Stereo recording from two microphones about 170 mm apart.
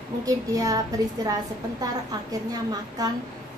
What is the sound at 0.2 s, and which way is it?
A woman's voice, 20° right (ahead or behind).